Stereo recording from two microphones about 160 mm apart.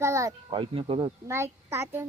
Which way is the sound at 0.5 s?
30° right (ahead or behind).